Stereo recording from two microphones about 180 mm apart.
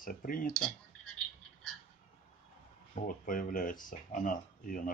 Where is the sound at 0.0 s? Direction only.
50° left (ahead or behind).